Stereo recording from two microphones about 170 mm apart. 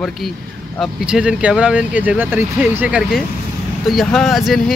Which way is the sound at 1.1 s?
5° right (ahead or behind).